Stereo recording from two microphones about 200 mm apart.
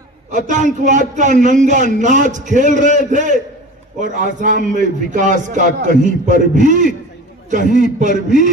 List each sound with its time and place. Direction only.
0.3 s a man's voice: 40° right (ahead or behind)